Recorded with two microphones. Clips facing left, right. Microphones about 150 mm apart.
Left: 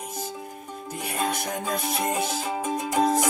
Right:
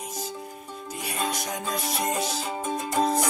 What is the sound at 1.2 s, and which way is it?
Music, 50° left (ahead or behind).